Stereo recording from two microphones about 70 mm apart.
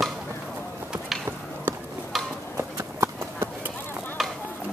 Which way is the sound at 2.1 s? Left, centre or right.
Centre.